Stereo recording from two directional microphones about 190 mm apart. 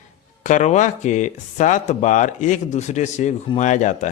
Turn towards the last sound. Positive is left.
turn(degrees=40)  # may be behind; listen again after turning